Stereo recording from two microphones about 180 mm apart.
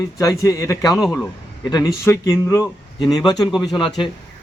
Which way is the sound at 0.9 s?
Centre (ahead or behind).